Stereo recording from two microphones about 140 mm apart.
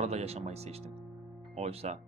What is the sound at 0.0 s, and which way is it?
Speech, 50° right (ahead or behind).